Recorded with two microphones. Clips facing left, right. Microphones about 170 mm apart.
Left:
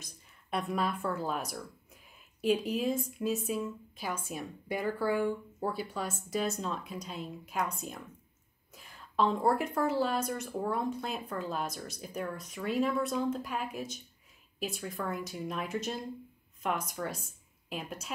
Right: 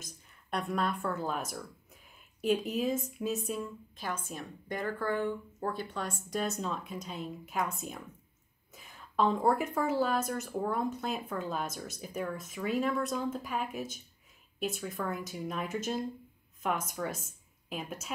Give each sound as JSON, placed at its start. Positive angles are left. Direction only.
{"t": 0.0, "sound": "a woman's voice", "side_deg": 0}